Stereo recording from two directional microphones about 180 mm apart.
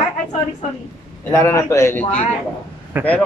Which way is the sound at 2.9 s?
10° right (ahead or behind).